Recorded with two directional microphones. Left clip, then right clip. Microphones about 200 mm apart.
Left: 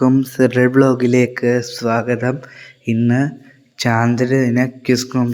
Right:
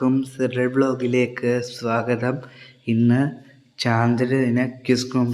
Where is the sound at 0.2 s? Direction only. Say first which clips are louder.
Left 8 dB; 30° left (ahead or behind).